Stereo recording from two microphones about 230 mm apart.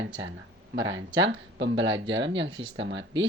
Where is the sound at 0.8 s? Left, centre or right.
Right.